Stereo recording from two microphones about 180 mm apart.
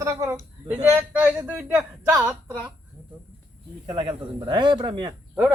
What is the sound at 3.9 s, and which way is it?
Speech, 25° right (ahead or behind).